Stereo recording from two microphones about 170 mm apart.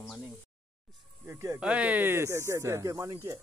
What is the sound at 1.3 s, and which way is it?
Speech, 20° right (ahead or behind).